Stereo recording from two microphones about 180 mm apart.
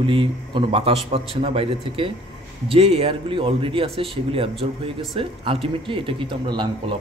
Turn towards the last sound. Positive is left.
turn(degrees=-25)  # may be behind; listen again after turning